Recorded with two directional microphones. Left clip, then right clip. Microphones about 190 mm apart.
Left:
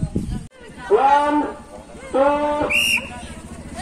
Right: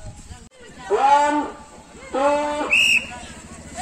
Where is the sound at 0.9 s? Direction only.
65° right (ahead or behind).